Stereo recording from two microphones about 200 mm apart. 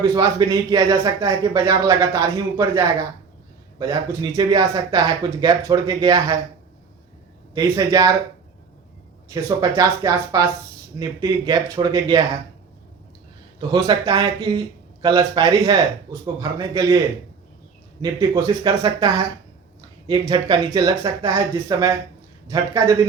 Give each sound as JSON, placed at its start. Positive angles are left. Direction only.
{"t": 0.1, "sound": "speech", "side_deg": -20}
{"t": 7.5, "sound": "speech", "side_deg": -20}
{"t": 9.3, "sound": "speech", "side_deg": -20}
{"t": 13.6, "sound": "speech", "side_deg": -20}
{"t": 18.0, "sound": "speech", "side_deg": -20}